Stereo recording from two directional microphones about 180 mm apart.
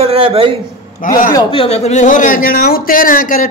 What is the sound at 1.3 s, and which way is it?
Speech, 30° left (ahead or behind).